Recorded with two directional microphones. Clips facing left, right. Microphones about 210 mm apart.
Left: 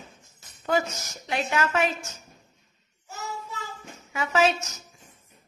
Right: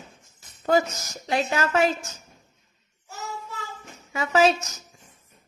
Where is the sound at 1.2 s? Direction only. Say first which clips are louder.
Right 2 dB; 35° right (ahead or behind).